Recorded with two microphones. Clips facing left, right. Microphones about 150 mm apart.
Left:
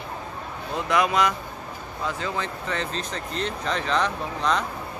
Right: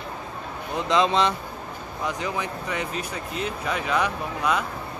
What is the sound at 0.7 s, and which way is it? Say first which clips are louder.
Speech: right 1 dB; 20° right (ahead or behind).